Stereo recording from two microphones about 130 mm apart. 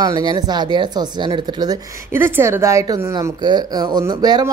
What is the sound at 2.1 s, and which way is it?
A woman's voice, 15° right (ahead or behind).